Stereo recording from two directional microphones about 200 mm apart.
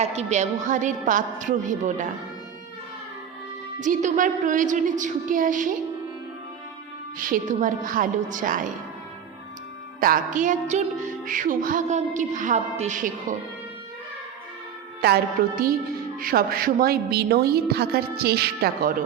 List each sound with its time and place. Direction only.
0.0 s a woman's voice: 35° right (ahead or behind)
3.8 s a woman's voice: 40° right (ahead or behind)
7.2 s a woman's voice: 40° right (ahead or behind)
10.0 s a woman's voice: 45° right (ahead or behind)
15.0 s a woman's voice: 50° right (ahead or behind)